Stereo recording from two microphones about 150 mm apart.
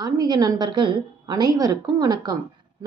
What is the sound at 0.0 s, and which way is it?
A woman's voice, 25° right (ahead or behind).